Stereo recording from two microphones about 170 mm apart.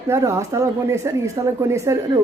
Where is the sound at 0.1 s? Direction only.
15° right (ahead or behind).